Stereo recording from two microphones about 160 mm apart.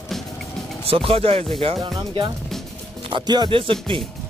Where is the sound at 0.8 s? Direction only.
35° right (ahead or behind).